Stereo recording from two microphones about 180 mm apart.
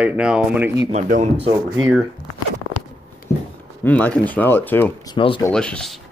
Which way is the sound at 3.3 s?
15° left (ahead or behind).